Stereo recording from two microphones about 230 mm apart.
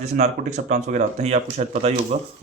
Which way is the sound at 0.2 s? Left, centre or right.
Right.